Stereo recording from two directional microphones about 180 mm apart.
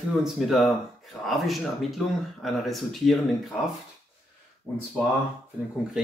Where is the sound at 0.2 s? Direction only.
Centre (ahead or behind).